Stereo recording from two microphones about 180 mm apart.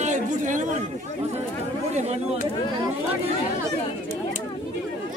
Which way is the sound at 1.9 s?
40° right (ahead or behind).